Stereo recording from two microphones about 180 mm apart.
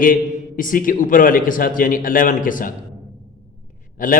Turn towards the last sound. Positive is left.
turn(degrees=50)  # may be behind; listen again after turning